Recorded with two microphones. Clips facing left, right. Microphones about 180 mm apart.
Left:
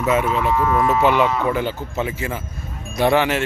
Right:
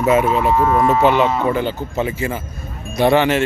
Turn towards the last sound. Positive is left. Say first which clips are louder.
# right 3 dB
turn(degrees=5)  # may be behind; listen again after turning